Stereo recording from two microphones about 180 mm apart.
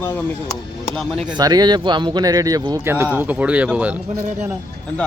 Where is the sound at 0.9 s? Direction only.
Centre (ahead or behind).